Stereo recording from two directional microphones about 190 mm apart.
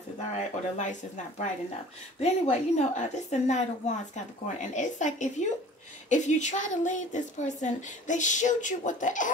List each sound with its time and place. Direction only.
0.4 s a woman's voice: 40° left (ahead or behind)